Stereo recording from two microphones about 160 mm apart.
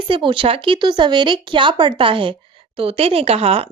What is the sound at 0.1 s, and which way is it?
Speech, 30° right (ahead or behind).